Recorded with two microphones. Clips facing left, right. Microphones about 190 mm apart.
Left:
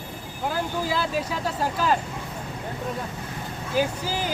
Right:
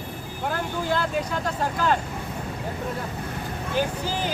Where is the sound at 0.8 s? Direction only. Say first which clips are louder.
Right 1 dB; 5° left (ahead or behind).